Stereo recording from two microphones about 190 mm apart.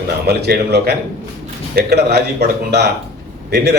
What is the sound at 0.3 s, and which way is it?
A man's voice, 55° right (ahead or behind).